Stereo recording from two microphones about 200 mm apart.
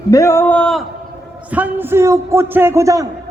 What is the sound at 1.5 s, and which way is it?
A man's voice, 10° right (ahead or behind).